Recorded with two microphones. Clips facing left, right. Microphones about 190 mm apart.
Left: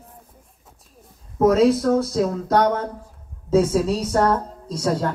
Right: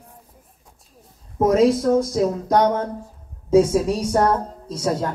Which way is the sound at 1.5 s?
15° right (ahead or behind).